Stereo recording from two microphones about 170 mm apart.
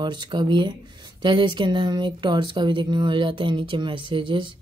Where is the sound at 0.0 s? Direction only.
25° right (ahead or behind).